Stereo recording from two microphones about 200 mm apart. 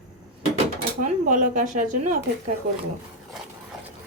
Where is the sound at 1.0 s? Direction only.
40° right (ahead or behind).